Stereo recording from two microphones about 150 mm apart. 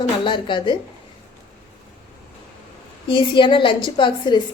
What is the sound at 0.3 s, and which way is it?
Speech, 30° left (ahead or behind).